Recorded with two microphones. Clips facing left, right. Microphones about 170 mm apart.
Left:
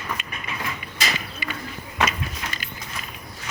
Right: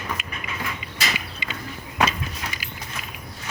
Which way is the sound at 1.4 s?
20° right (ahead or behind).